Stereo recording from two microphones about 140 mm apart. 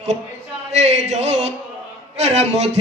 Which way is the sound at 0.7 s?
50° right (ahead or behind).